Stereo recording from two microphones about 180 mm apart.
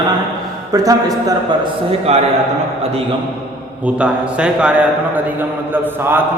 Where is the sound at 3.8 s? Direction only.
5° right (ahead or behind).